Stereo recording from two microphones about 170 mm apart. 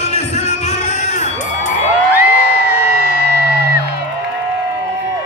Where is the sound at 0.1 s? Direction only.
45° left (ahead or behind).